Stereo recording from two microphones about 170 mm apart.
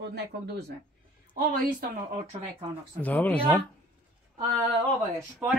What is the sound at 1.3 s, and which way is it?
Speech, 55° right (ahead or behind).